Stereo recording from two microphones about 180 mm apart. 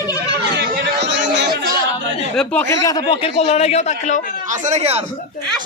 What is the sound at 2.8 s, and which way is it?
A man's voice, 20° left (ahead or behind).